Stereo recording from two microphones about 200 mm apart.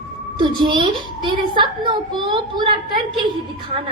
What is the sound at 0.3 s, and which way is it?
A woman's voice, 25° right (ahead or behind).